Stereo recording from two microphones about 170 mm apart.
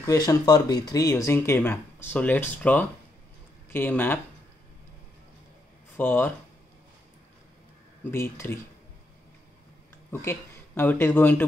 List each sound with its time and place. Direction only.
0.0 s speech: 20° left (ahead or behind)
5.9 s speech: 10° left (ahead or behind)
8.0 s speech: 15° left (ahead or behind)
10.2 s a man's voice: 10° left (ahead or behind)